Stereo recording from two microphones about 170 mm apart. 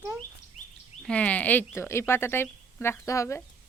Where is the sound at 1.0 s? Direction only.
5° left (ahead or behind).